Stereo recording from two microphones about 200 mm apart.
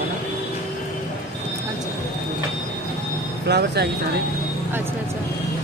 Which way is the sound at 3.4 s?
55° right (ahead or behind).